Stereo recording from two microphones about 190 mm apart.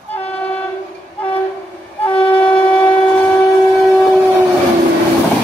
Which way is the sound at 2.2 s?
5° left (ahead or behind).